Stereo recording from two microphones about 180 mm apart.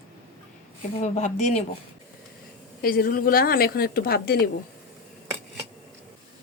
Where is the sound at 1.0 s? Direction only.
35° left (ahead or behind).